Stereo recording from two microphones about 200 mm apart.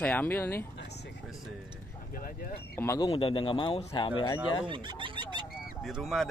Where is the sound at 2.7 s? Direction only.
10° left (ahead or behind).